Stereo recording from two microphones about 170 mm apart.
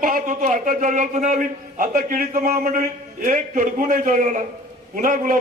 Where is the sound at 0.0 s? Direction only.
50° right (ahead or behind).